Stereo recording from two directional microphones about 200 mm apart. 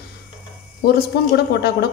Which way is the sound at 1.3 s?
55° left (ahead or behind).